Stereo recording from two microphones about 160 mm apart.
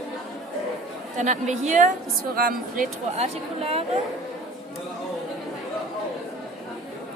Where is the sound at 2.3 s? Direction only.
70° right (ahead or behind).